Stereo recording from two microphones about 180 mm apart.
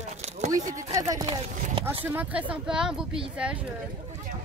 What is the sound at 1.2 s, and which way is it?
Speech, 40° right (ahead or behind).